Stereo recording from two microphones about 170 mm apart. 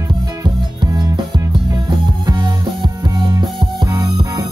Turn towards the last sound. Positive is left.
turn(degrees=-20)  # may be behind; listen again after turning